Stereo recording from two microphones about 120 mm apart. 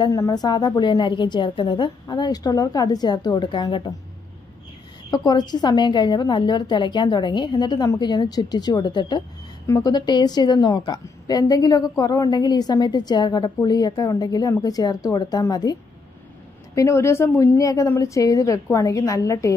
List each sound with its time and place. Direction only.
0.1 s a woman's voice: 30° left (ahead or behind)
5.1 s a woman's voice: 35° left (ahead or behind)